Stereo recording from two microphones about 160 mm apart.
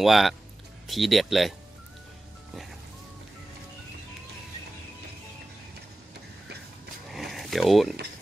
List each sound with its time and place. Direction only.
0.0 s speech: centre (ahead or behind)
7.1 s zipper: centre (ahead or behind)